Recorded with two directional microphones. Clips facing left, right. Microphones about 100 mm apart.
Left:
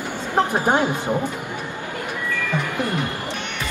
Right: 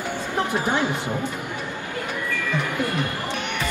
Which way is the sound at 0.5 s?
50° left (ahead or behind).